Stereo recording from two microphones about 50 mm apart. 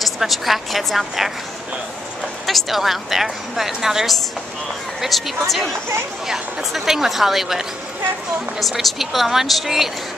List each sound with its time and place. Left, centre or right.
0.0 s a woman's voice: centre
2.4 s a woman's voice: centre